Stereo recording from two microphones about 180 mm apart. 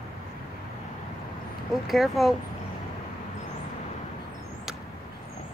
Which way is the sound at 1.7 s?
Centre (ahead or behind).